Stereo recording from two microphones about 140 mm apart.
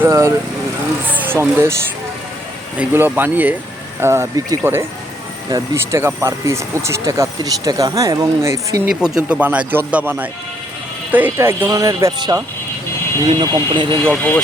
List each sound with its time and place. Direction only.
0.0 s speech: 20° right (ahead or behind)
2.7 s speech: 15° right (ahead or behind)
9.0 s speech: 5° right (ahead or behind); by 13.8 s 35° right (ahead or behind)
14.1 s speech: 10° left (ahead or behind)